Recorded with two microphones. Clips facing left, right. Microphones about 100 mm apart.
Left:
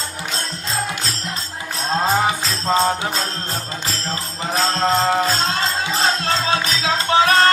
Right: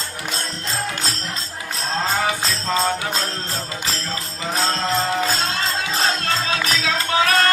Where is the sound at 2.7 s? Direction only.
25° left (ahead or behind).